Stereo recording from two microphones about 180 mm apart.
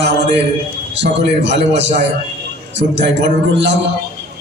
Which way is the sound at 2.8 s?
80° right.